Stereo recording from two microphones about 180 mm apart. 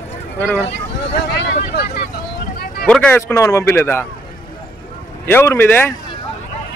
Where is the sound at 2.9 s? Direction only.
10° left (ahead or behind).